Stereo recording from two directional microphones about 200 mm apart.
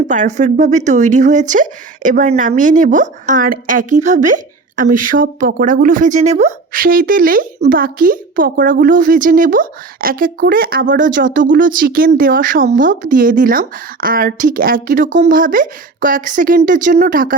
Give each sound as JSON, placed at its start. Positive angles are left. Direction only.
{"t": 0.1, "sound": "speech", "side_deg": -40}